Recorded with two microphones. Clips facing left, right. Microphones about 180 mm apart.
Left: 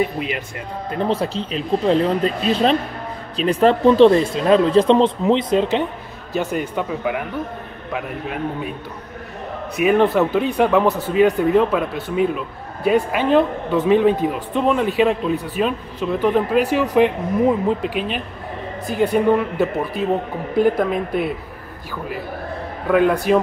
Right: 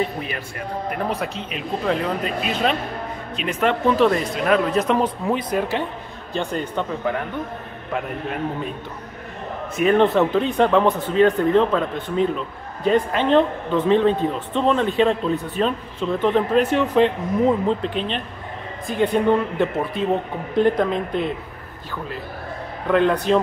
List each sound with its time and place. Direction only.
0.0 s speech: 15° left (ahead or behind)
0.8 s speech: 25° left (ahead or behind)
6.3 s speech: 10° left (ahead or behind)
9.8 s speech: 5° left (ahead or behind)
22.8 s speech: 10° left (ahead or behind)